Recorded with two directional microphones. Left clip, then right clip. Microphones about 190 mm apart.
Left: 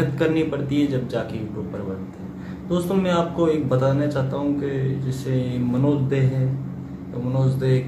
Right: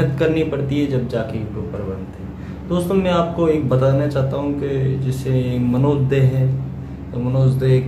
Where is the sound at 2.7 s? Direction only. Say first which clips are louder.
Right 4 dB; centre (ahead or behind).